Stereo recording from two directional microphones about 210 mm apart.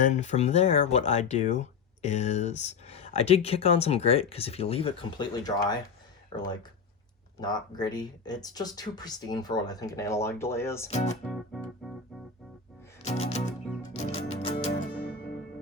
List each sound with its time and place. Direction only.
0.0 s speech: 35° left (ahead or behind); by 10.8 s 10° left (ahead or behind)
10.8 s music: 35° left (ahead or behind)
11.3 s music: centre (ahead or behind)
13.0 s music: 30° left (ahead or behind)
14.6 s music: 40° left (ahead or behind)